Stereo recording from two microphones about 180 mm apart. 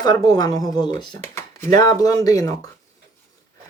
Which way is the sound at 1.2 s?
15° left (ahead or behind).